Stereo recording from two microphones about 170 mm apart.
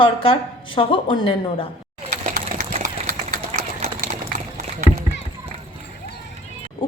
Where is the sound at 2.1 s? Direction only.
50° right (ahead or behind).